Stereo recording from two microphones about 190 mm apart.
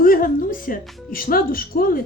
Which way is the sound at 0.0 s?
50° left (ahead or behind).